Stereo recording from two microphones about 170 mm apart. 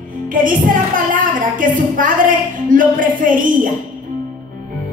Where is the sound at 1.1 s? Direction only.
50° right (ahead or behind).